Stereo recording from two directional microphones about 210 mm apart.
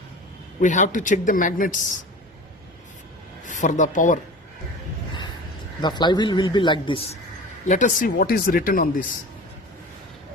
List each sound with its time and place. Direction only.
0.6 s speech: 35° left (ahead or behind)
3.4 s speech: 35° left (ahead or behind)
5.8 s a man's voice: 20° left (ahead or behind)
7.7 s speech: 35° left (ahead or behind)